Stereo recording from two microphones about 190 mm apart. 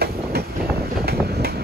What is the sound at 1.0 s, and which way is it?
Vehicle, 55° right (ahead or behind).